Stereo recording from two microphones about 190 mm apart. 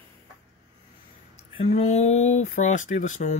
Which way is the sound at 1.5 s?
30° left (ahead or behind).